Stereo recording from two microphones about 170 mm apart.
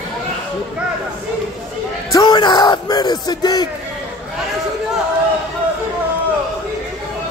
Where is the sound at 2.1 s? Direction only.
25° left (ahead or behind).